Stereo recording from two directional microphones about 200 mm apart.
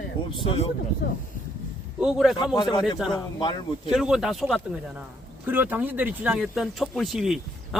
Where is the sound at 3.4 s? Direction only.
20° left (ahead or behind).